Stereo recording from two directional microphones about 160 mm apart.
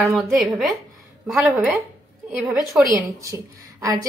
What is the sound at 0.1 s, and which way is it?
Speech, centre (ahead or behind).